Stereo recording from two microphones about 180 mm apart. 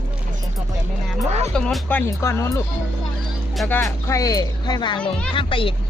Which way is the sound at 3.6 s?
5° left (ahead or behind).